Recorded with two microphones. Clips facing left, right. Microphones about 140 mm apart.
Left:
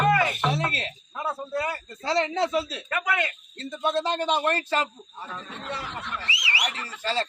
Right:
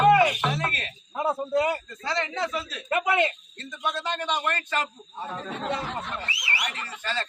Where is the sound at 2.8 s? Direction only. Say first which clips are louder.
Right 4 dB; 25° right (ahead or behind).